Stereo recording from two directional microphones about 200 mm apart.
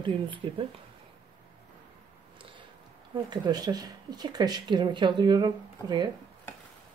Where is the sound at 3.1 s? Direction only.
20° right (ahead or behind).